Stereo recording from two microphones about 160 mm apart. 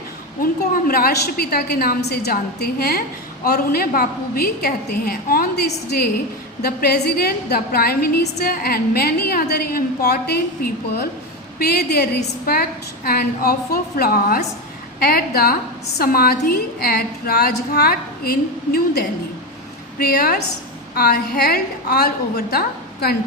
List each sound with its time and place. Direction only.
0.7 s a woman's voice: 70° left (ahead or behind); by 12.0 s 90° left
13.1 s a woman's voice: 75° left (ahead or behind)